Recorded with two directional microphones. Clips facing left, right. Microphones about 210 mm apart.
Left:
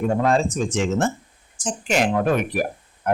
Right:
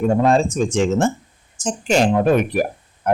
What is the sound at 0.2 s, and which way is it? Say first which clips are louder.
Speech: right 4 dB; 30° right (ahead or behind).